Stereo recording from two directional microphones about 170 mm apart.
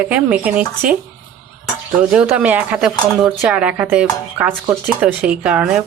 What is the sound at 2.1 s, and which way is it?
Speech, 5° right (ahead or behind).